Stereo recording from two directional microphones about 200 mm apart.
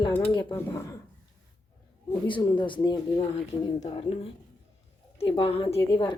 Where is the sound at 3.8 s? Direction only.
30° left (ahead or behind).